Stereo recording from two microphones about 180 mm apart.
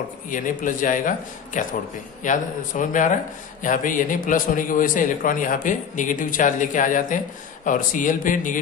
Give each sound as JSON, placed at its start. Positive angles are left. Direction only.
{"t": 0.3, "sound": "a man's voice", "side_deg": 50}